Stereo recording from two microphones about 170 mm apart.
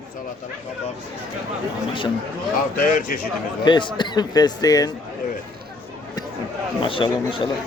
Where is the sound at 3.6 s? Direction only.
25° left (ahead or behind).